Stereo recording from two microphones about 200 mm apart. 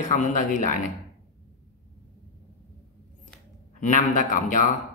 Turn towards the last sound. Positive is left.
turn(degrees=40)  # may be behind; listen again after turning